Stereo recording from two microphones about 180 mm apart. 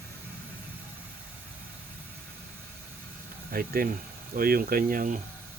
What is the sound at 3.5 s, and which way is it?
Speech, 55° right (ahead or behind).